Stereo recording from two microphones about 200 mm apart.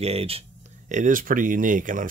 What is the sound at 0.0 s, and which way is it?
Speech, 30° right (ahead or behind).